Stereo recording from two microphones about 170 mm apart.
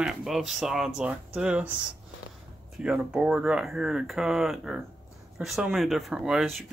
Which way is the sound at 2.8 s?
5° right (ahead or behind).